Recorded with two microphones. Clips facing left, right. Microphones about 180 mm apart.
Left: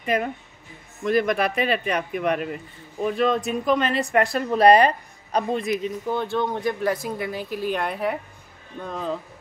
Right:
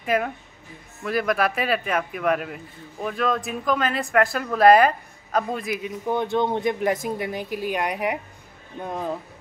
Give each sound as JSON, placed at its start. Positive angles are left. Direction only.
{"t": 0.0, "sound": "a woman's voice", "side_deg": 0}
{"t": 6.0, "sound": "speech", "side_deg": -20}